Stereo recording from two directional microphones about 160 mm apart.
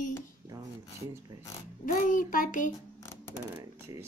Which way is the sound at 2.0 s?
55° left (ahead or behind).